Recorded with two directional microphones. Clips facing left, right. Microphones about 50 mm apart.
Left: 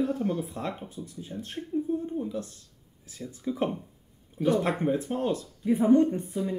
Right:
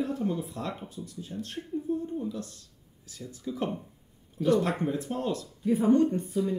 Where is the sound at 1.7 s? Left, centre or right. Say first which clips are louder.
Left 5 dB; left.